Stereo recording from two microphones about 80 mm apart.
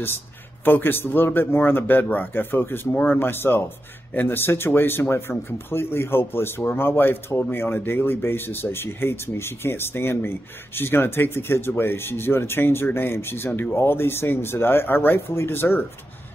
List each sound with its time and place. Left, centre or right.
0.7 s speech: left